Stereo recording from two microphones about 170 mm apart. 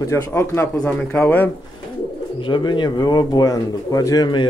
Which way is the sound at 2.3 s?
30° left (ahead or behind).